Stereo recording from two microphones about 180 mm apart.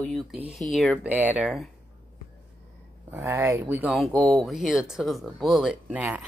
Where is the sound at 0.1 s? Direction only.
Centre (ahead or behind).